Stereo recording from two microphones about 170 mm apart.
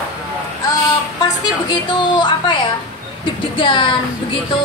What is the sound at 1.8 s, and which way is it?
A woman's voice, 30° left (ahead or behind).